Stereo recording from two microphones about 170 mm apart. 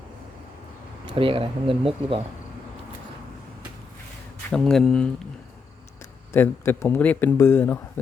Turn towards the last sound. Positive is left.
turn(degrees=10)  # may be behind; listen again after turning